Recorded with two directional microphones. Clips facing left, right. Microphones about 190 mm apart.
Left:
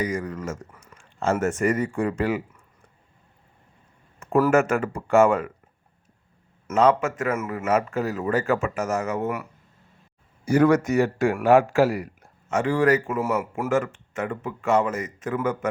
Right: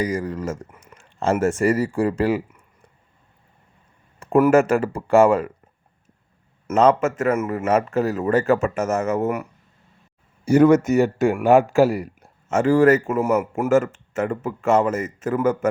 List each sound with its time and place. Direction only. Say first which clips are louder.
0.1 s a man's voice: right 4 dB; 30° right (ahead or behind)
0.5 s a sound: right 3 dB; 20° right (ahead or behind)
0.9 s a man's voice: right 3 dB; 35° right (ahead or behind)
4.2 s a sound: right 4 dB; 25° right (ahead or behind)
4.7 s a man's voice: right 3 dB; 30° right (ahead or behind)
6.7 s a man's voice: right 3 dB; 40° right (ahead or behind)
10.4 s speech: right 4 dB; 25° right (ahead or behind)
12.5 s speech: right 5 dB; 45° right (ahead or behind)